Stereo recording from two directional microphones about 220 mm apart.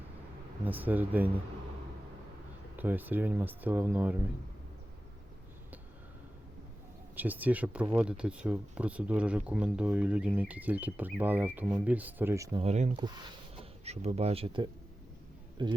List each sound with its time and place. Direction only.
0.6 s speech: 10° right (ahead or behind)
2.7 s speech: 10° right (ahead or behind)
7.2 s speech: 5° right (ahead or behind)
12.5 s speech: 30° right (ahead or behind)
13.0 s speech: 20° right (ahead or behind)